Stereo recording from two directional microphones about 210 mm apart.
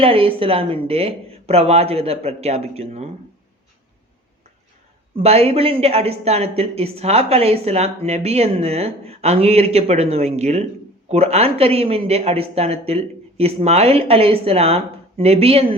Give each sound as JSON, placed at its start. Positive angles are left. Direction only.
{"t": 0.0, "sound": "speech", "side_deg": -25}
{"t": 5.2, "sound": "speech", "side_deg": -30}